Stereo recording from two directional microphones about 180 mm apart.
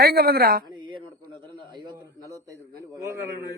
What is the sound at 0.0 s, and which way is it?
Speech, 60° right (ahead or behind).